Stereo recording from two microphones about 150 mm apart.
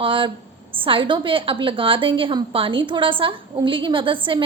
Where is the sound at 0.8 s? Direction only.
35° right (ahead or behind).